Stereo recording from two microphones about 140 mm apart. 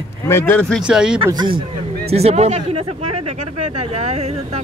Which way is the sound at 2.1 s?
45° right (ahead or behind).